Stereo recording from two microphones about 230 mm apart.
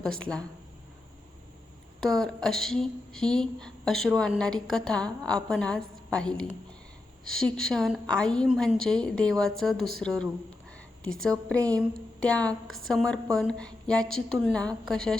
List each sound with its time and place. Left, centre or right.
0.2 s a woman's voice: centre
2.0 s a woman's voice: centre